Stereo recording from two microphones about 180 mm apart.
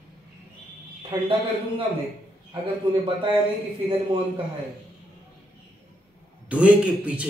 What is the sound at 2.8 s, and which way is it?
Speech, 25° right (ahead or behind).